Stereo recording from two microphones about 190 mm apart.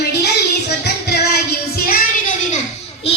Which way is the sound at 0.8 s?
60° left (ahead or behind).